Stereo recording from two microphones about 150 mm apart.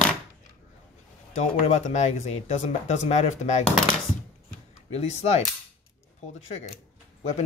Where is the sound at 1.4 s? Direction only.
50° left (ahead or behind).